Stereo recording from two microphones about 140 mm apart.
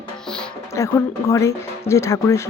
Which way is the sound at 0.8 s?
20° left (ahead or behind).